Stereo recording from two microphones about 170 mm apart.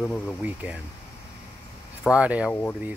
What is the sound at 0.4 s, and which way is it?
Speech, 10° right (ahead or behind).